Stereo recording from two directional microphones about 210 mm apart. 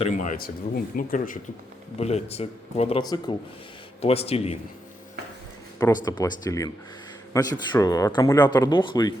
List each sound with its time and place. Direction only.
0.0 s speech: 35° left (ahead or behind)
6.1 s speech: 20° left (ahead or behind)